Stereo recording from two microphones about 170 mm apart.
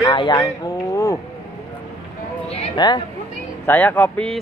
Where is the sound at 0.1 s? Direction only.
25° left (ahead or behind).